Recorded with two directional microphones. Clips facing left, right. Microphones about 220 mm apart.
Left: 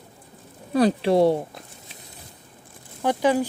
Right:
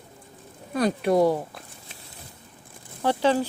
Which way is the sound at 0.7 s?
30° left (ahead or behind).